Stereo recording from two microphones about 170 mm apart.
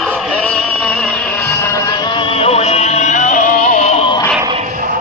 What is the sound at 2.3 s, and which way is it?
Music, 35° left (ahead or behind).